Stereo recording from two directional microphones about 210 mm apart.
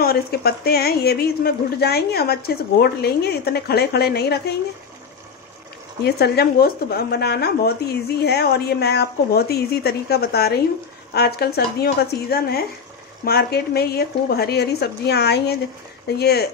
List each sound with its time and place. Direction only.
0.0 s speech: 45° left (ahead or behind)
6.0 s speech: 50° left (ahead or behind)